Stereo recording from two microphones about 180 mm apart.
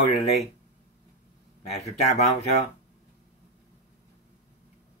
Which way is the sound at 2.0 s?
35° left (ahead or behind).